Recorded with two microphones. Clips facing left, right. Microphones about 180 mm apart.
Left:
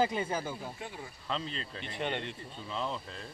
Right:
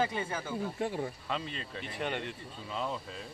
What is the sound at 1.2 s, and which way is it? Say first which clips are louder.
Speech: even; 10° right (ahead or behind).